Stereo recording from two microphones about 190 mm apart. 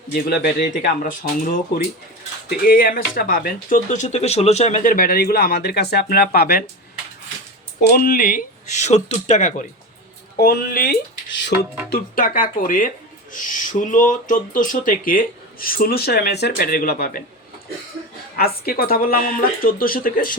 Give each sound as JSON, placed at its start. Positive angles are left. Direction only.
{"t": 0.1, "sound": "speech", "side_deg": 60}
{"t": 0.8, "sound": "speech", "side_deg": 45}
{"t": 7.8, "sound": "speech", "side_deg": 50}
{"t": 10.3, "sound": "speech", "side_deg": 50}
{"t": 18.3, "sound": "speech", "side_deg": 50}